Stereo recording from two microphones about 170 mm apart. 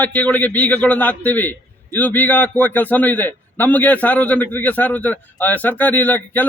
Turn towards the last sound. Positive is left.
turn(degrees=10)  # may be behind; listen again after turning